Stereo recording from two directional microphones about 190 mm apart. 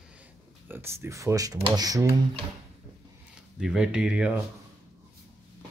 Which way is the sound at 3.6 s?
5° right (ahead or behind).